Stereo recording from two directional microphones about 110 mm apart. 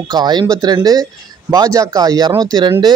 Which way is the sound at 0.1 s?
40° right (ahead or behind).